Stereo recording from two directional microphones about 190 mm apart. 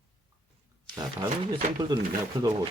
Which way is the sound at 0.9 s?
20° right (ahead or behind).